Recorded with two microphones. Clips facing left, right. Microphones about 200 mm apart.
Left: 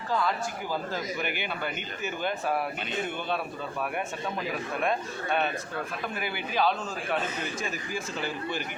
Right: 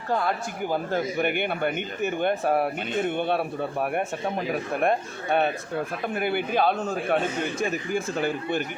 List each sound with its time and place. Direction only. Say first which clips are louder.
0.1 s speech: right 3 dB; 55° right (ahead or behind)